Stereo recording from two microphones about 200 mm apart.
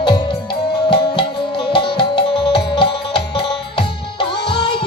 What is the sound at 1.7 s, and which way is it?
Music, 25° left (ahead or behind).